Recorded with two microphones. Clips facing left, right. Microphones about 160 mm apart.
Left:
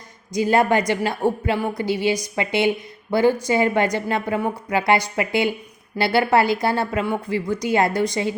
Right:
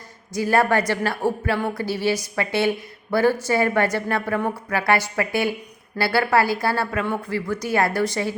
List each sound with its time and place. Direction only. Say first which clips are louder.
0.3 s a woman's voice: left 2 dB; 20° left (ahead or behind)